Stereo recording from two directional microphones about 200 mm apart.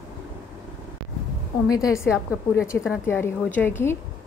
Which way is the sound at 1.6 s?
15° left (ahead or behind).